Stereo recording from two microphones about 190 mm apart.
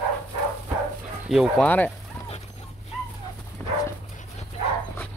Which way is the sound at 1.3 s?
5° left (ahead or behind).